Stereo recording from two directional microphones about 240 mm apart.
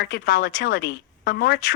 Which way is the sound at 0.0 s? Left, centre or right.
Left.